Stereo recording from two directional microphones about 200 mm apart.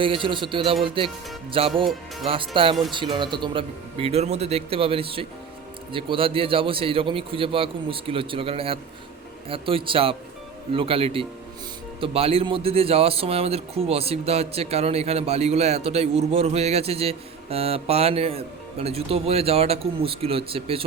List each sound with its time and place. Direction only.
0.0 s speech: 25° right (ahead or behind)